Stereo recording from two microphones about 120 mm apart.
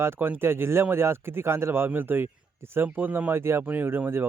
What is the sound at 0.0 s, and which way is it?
Speech, 20° right (ahead or behind).